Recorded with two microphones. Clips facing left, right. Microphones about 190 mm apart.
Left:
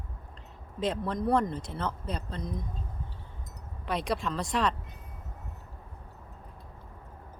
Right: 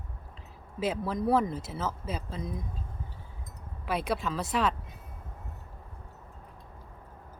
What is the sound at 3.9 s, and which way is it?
Speech, 5° right (ahead or behind).